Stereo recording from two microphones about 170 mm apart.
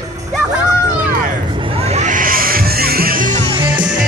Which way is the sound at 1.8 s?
45° right (ahead or behind).